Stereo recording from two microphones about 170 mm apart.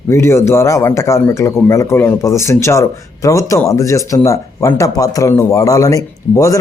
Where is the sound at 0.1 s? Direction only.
15° left (ahead or behind).